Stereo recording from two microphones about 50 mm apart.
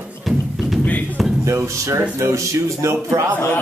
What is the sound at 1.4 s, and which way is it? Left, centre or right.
Speech, right.